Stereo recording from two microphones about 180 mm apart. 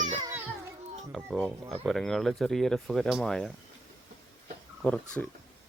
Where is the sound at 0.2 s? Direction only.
15° right (ahead or behind).